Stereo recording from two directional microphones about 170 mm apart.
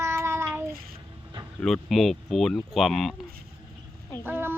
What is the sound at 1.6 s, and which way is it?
Speech, centre (ahead or behind).